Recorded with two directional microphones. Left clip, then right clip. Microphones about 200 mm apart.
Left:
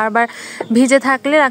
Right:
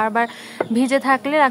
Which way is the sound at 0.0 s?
25° left (ahead or behind).